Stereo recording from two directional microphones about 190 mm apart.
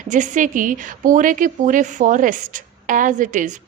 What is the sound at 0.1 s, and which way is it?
A woman's voice, 40° right (ahead or behind).